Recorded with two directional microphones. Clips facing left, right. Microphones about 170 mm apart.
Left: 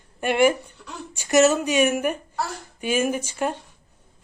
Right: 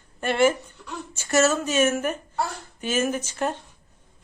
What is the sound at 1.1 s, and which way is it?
Speech, 15° left (ahead or behind).